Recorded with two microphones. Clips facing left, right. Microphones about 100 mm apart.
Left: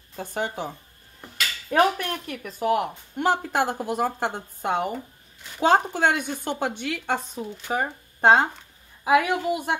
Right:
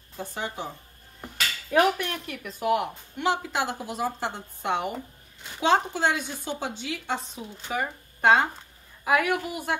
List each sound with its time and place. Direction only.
0.2 s speech: 55° left (ahead or behind)
1.7 s a woman's voice: 40° left (ahead or behind); by 7.2 s 60° left (ahead or behind)
7.7 s a woman's voice: 35° left (ahead or behind)